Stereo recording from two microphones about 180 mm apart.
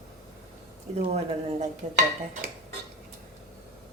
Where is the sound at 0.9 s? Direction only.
35° right (ahead or behind).